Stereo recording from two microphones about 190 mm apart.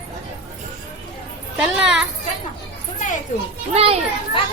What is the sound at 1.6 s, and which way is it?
Speech, 5° right (ahead or behind).